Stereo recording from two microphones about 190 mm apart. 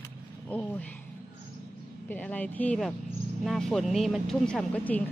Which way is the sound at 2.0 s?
10° left (ahead or behind).